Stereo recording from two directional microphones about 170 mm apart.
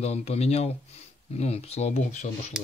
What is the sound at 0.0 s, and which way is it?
Speech, 40° left (ahead or behind).